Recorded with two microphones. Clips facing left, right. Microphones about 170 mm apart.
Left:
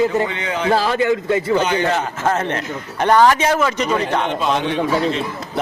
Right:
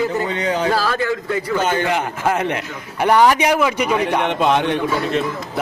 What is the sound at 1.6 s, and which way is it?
Speech, 50° right (ahead or behind).